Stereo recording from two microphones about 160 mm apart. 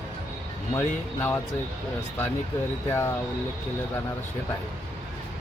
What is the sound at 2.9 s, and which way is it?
Speech, 15° left (ahead or behind).